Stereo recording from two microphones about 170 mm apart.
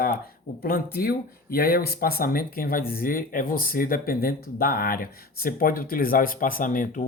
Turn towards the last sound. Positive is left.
turn(degrees=50)  # may be behind; listen again after turning